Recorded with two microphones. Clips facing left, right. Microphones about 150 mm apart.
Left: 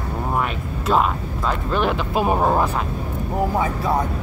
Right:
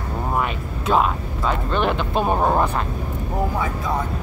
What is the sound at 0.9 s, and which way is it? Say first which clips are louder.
Speech: even; centre (ahead or behind).